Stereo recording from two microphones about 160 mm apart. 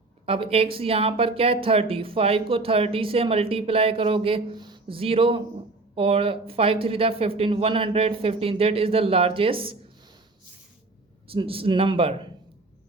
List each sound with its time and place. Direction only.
0.3 s speech: 35° right (ahead or behind)
11.3 s speech: 35° right (ahead or behind)